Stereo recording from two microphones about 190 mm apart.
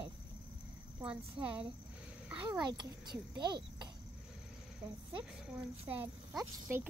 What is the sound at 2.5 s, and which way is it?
Speech, 20° right (ahead or behind).